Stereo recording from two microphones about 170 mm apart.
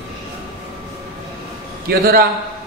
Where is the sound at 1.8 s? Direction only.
65° right (ahead or behind).